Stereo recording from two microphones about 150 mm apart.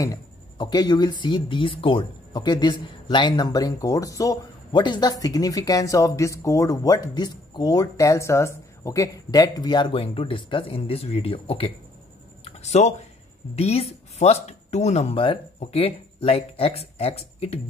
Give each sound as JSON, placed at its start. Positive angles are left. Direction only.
{"t": 0.0, "sound": "speech", "side_deg": 25}
{"t": 12.4, "sound": "a sound", "side_deg": 45}
{"t": 13.6, "sound": "speech", "side_deg": 45}